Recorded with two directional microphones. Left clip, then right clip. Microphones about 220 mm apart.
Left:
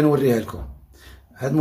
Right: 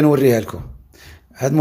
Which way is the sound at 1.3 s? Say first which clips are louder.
Right 5 dB; 35° right (ahead or behind).